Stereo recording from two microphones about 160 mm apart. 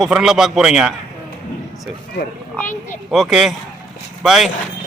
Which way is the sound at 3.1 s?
Centre (ahead or behind).